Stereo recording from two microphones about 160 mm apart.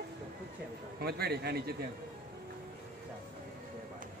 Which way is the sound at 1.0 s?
85° right.